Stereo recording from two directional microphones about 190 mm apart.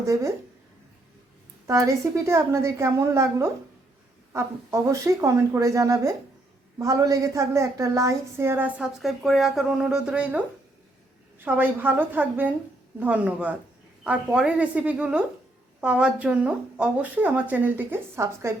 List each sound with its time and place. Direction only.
0.0 s a woman's voice: 15° right (ahead or behind)
1.6 s a woman's voice: 15° right (ahead or behind)
11.4 s a woman's voice: 10° right (ahead or behind)